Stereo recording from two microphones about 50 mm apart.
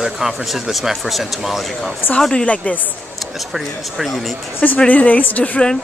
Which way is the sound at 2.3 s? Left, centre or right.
Left.